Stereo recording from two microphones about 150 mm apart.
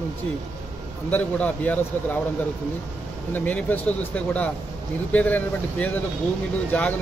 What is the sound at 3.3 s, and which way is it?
Speech, 10° left (ahead or behind).